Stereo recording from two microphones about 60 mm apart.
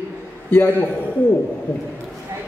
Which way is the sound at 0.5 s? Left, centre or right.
Left.